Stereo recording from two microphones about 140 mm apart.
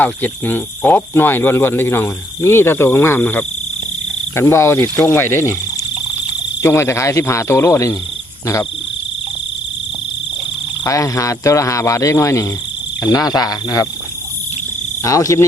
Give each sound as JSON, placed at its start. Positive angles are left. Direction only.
{"t": 0.0, "sound": "speech", "side_deg": 15}
{"t": 6.6, "sound": "speech", "side_deg": 20}
{"t": 10.8, "sound": "speech", "side_deg": 20}
{"t": 15.0, "sound": "speech", "side_deg": 25}